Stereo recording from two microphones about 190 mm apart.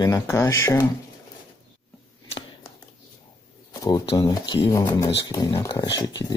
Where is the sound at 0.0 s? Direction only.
15° left (ahead or behind).